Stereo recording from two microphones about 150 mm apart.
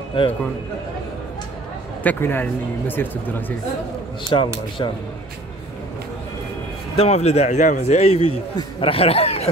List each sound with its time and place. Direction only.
0.2 s speech: 35° left (ahead or behind)
2.0 s speech: 15° left (ahead or behind)
4.3 s speech: 30° left (ahead or behind)
7.0 s speech: 45° left (ahead or behind)